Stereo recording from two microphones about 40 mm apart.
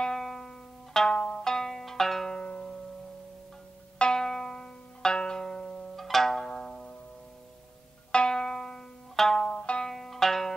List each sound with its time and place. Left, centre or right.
0.2 s music: centre
1.1 s zither: left
1.4 s zither: centre
4.0 s zither: centre
5.4 s music: centre
6.0 s zither: centre
8.1 s music: left
9.5 s zither: left
9.8 s zither: centre